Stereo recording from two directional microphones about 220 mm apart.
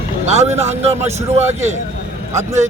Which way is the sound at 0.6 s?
30° right (ahead or behind).